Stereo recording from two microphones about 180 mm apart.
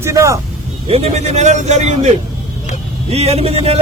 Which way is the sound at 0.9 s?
35° right (ahead or behind).